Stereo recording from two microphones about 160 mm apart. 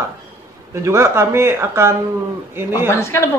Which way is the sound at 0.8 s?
15° right (ahead or behind).